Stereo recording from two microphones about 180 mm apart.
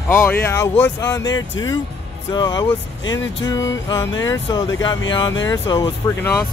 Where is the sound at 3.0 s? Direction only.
90° left.